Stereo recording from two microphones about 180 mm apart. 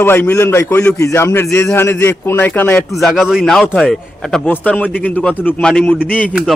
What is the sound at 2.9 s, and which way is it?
A man's voice, centre (ahead or behind).